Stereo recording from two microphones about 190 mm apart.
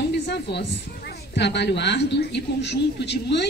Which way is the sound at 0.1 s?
65° left (ahead or behind).